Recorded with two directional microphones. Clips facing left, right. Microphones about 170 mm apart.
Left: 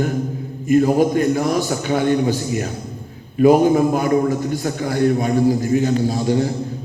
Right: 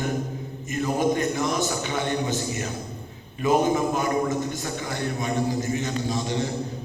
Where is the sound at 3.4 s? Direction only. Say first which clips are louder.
Left 9 dB; 45° left (ahead or behind).